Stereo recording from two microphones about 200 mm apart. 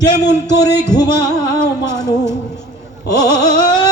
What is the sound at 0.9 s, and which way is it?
Music, 20° left (ahead or behind).